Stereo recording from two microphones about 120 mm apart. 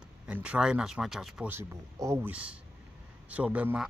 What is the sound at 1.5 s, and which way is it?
Speech, 20° right (ahead or behind).